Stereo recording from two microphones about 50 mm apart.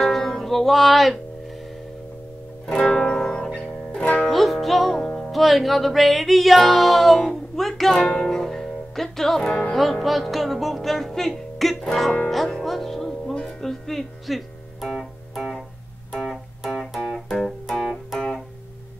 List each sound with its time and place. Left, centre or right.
0.0 s music: centre
2.9 s music: centre
4.3 s music: centre
9.5 s speech: centre
10.0 s music: centre
11.8 s speech: centre
12.6 s music: centre